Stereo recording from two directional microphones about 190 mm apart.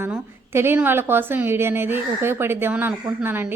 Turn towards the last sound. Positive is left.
turn(degrees=-10)  # may be behind; listen again after turning